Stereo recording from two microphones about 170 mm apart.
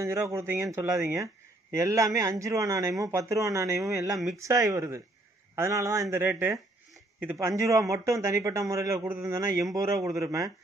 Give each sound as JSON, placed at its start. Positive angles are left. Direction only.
{"t": 0.0, "sound": "speech", "side_deg": -15}